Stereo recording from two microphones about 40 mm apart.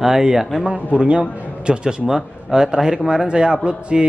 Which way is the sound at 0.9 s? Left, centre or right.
Right.